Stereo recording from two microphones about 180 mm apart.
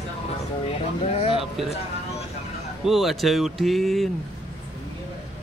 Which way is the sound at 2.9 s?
Centre (ahead or behind).